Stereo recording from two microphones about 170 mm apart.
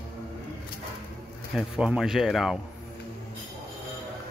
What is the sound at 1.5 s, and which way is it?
Speech, 5° right (ahead or behind).